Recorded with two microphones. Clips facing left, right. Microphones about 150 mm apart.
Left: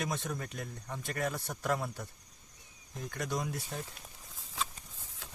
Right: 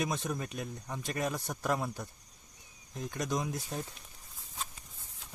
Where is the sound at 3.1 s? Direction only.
20° right (ahead or behind).